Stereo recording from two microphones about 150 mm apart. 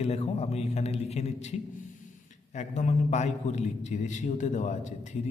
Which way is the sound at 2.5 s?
50° left (ahead or behind).